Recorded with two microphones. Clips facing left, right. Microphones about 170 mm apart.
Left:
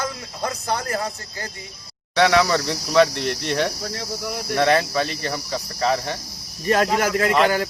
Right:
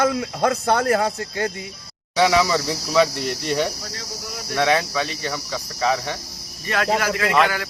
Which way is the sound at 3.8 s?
55° left (ahead or behind).